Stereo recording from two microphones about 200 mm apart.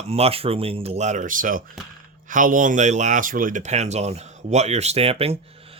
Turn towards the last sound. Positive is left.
turn(degrees=-30)  # may be behind; listen again after turning